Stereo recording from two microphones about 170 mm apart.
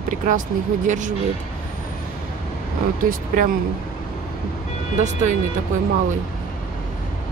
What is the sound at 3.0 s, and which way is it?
Speech, 55° right (ahead or behind).